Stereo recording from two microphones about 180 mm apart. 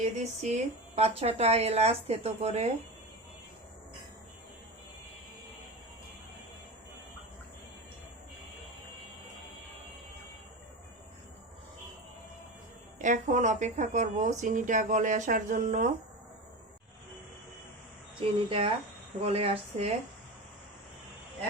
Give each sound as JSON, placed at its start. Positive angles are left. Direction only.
{"t": 0.0, "sound": "speech", "side_deg": -40}
{"t": 13.0, "sound": "speech", "side_deg": -45}
{"t": 18.4, "sound": "speech", "side_deg": -30}